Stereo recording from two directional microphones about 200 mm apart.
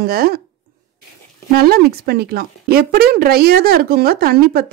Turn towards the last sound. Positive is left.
turn(degrees=-50)  # may be behind; listen again after turning